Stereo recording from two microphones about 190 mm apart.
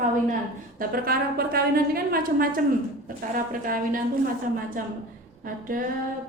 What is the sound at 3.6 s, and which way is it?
Speech, 45° right (ahead or behind).